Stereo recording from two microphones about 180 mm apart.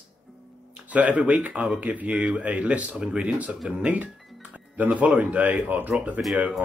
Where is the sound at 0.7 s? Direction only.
10° right (ahead or behind).